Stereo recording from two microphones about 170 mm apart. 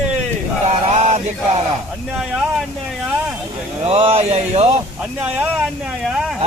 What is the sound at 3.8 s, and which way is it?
Speech, 35° right (ahead or behind).